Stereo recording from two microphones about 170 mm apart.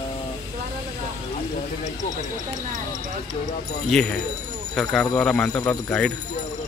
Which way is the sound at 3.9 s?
Centre (ahead or behind).